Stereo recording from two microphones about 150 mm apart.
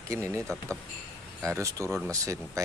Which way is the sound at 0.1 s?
20° right (ahead or behind).